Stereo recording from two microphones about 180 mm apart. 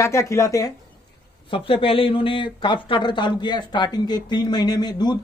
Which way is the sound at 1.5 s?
30° left (ahead or behind).